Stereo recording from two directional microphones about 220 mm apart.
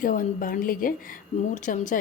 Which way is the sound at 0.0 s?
40° left (ahead or behind).